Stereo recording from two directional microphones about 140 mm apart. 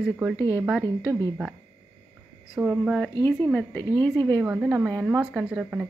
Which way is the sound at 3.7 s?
15° left (ahead or behind).